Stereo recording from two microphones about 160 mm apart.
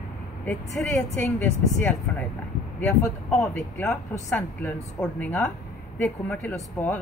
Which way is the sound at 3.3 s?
15° left (ahead or behind).